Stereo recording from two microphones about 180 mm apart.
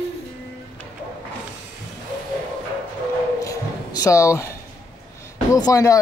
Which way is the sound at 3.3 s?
20° left (ahead or behind).